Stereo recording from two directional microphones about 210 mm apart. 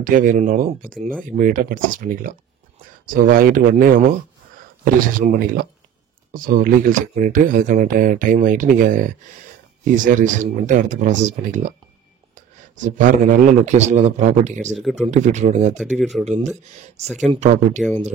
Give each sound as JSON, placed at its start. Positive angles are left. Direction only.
{"t": 0.0, "sound": "speech", "side_deg": -40}
{"t": 14.7, "sound": "speech", "side_deg": 0}
{"t": 15.0, "sound": "speech", "side_deg": -35}
{"t": 15.8, "sound": "speech", "side_deg": 0}
{"t": 16.3, "sound": "speech", "side_deg": -35}